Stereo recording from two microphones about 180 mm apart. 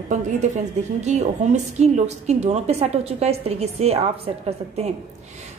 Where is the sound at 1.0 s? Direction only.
40° right (ahead or behind).